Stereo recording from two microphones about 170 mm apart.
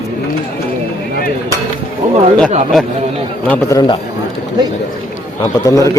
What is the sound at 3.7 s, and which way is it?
Speech, 25° left (ahead or behind).